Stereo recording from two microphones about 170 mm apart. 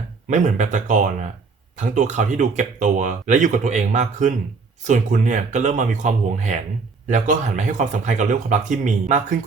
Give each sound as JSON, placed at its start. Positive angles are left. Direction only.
{"t": 0.3, "sound": "speech", "side_deg": -45}